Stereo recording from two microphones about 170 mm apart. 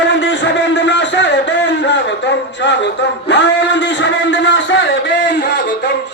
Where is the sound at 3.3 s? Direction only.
90° left.